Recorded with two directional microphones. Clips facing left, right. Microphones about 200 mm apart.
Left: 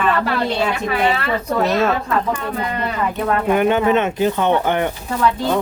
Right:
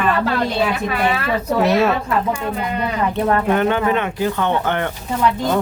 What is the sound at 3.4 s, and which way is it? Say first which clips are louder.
Speech: left 2 dB; 10° left (ahead or behind).